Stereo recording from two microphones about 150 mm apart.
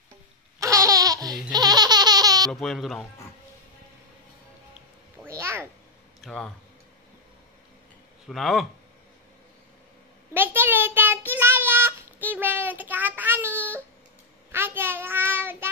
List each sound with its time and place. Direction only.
0.6 s laughter: 20° right (ahead or behind)
2.5 s speech: centre (ahead or behind)
5.2 s a sound: 20° right (ahead or behind)
6.2 s speech: 5° left (ahead or behind)
8.3 s speech: centre (ahead or behind)
10.3 s child singing: 15° right (ahead or behind)